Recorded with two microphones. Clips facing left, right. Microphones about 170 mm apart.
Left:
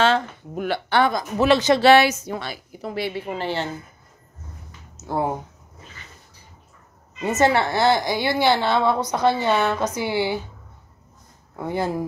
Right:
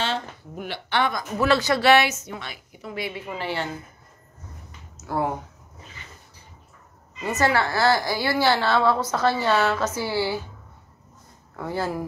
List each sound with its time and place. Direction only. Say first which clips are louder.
0.6 s a woman's voice: left 5 dB; 45° left (ahead or behind)
1.1 s a woman's voice: left 3 dB; 20° left (ahead or behind)
4.9 s a sound: left 2 dB; 20° left (ahead or behind)
7.2 s a woman's voice: left 3 dB; 25° left (ahead or behind)
11.5 s a woman's voice: left 3 dB; 20° left (ahead or behind)